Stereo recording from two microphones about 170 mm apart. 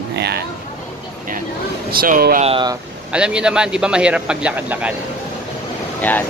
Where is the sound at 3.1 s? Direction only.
5° right (ahead or behind).